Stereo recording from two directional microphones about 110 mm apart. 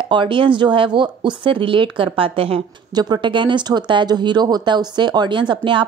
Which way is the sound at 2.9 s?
40° right (ahead or behind).